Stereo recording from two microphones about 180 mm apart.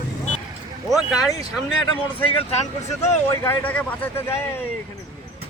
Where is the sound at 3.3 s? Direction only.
10° left (ahead or behind).